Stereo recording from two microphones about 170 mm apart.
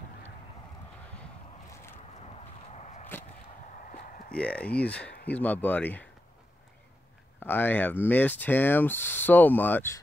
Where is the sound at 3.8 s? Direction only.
50° left (ahead or behind).